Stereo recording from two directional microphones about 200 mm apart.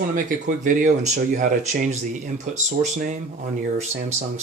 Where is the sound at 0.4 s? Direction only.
40° right (ahead or behind).